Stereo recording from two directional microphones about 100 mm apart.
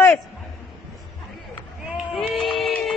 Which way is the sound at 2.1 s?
Centre (ahead or behind).